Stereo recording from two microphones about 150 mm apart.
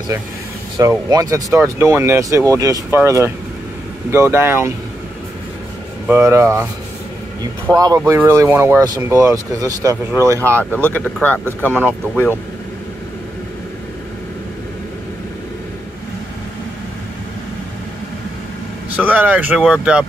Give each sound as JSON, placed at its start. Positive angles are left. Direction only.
{"t": 0.7, "sound": "speech", "side_deg": -20}
{"t": 6.0, "sound": "speech", "side_deg": -15}
{"t": 7.7, "sound": "speech", "side_deg": -25}
{"t": 10.6, "sound": "speech", "side_deg": 10}
{"t": 18.9, "sound": "speech", "side_deg": -10}